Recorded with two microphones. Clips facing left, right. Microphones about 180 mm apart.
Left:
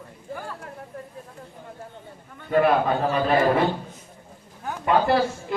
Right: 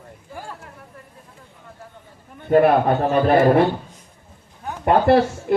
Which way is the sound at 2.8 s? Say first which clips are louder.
Right 5 dB; 60° right (ahead or behind).